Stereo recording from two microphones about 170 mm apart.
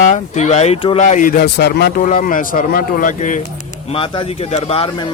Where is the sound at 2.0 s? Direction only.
50° left (ahead or behind).